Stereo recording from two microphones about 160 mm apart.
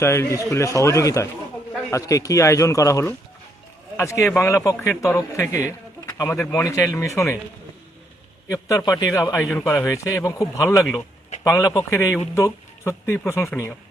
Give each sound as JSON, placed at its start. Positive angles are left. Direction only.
{"t": 0.0, "sound": "speech", "side_deg": 15}
{"t": 8.4, "sound": "speech", "side_deg": 20}
{"t": 9.4, "sound": "speech", "side_deg": 0}
{"t": 9.6, "sound": "speech", "side_deg": 20}